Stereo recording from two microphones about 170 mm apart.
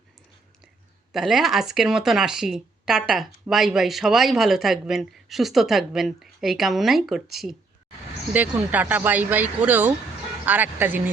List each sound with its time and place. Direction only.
1.1 s speech: centre (ahead or behind)